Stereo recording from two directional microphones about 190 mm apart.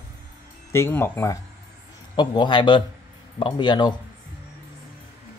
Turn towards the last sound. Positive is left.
turn(degrees=25)  # may be behind; listen again after turning